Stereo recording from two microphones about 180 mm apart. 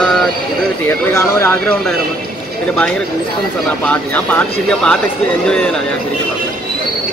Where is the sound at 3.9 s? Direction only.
5° left (ahead or behind).